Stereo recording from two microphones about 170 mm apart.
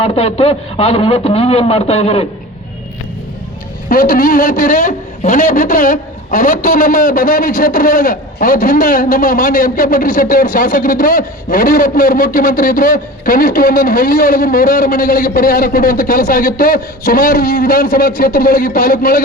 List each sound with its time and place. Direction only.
0.0 s speech: 35° left (ahead or behind)
3.8 s a man's voice: 55° left (ahead or behind)